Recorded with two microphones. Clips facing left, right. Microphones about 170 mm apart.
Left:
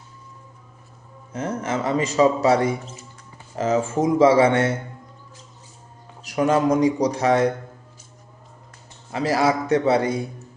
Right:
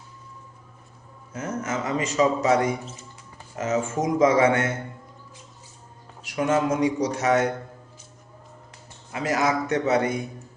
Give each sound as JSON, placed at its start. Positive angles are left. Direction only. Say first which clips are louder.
{"t": 1.3, "sound": "a man's voice", "louder": "left 3 dB", "side_deg": 30}
{"t": 6.2, "sound": "a man's voice", "louder": "left 4 dB", "side_deg": 35}
{"t": 9.1, "sound": "a man's voice", "louder": "left 3 dB", "side_deg": 35}